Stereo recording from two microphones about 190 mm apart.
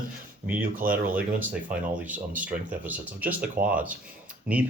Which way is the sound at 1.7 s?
10° right (ahead or behind).